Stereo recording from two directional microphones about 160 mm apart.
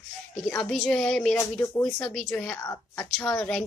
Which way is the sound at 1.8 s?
5° left (ahead or behind).